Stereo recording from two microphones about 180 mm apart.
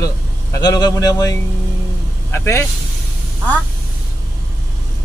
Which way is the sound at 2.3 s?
15° left (ahead or behind).